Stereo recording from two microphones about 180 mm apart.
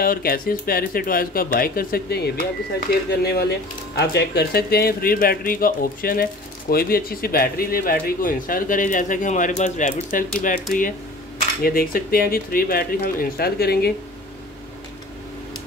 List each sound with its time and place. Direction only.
0.0 s speech: 55° left (ahead or behind)